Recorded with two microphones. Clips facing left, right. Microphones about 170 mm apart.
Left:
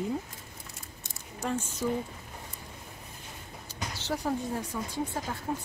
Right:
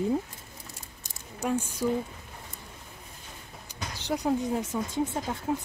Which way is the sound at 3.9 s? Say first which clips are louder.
Right 4 dB; 15° right (ahead or behind).